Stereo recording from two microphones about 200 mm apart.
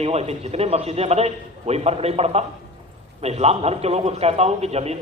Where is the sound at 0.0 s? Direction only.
30° right (ahead or behind).